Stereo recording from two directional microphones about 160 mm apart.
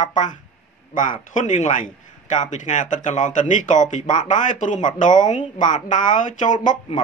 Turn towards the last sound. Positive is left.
turn(degrees=55)  # may be behind; listen again after turning